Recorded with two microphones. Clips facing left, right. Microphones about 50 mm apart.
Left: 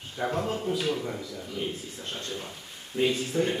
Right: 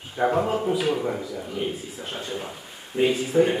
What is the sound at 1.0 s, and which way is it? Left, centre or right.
A man's voice, right.